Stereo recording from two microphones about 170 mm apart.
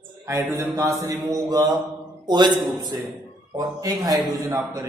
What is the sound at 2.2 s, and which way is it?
A man's voice, 25° right (ahead or behind).